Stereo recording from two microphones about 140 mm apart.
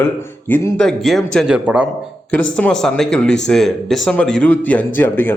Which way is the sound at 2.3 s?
5° left (ahead or behind).